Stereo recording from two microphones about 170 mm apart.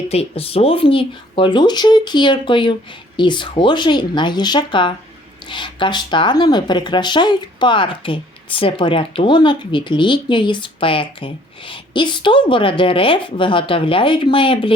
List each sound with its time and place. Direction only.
0.1 s speech: 35° left (ahead or behind)